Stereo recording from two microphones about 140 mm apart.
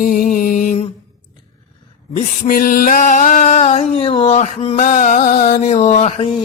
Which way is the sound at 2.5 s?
90° left.